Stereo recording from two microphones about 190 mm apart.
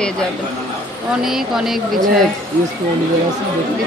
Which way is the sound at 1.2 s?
Centre (ahead or behind).